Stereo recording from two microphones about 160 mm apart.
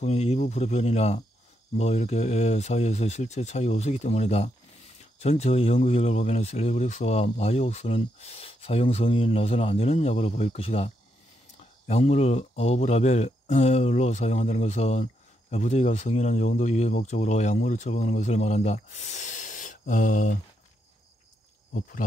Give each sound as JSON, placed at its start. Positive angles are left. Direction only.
{"t": 0.0, "sound": "speech", "side_deg": 40}
{"t": 11.9, "sound": "speech", "side_deg": 45}
{"t": 21.7, "sound": "speech", "side_deg": 55}